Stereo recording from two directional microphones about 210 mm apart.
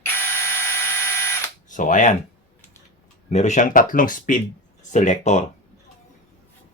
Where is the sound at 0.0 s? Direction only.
10° left (ahead or behind).